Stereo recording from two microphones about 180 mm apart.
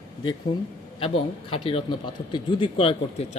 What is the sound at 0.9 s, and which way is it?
A man's voice, 30° left (ahead or behind).